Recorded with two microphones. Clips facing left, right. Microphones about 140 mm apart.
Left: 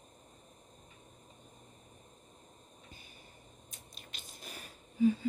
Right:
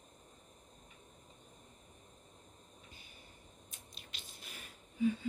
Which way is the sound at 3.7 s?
45° left (ahead or behind).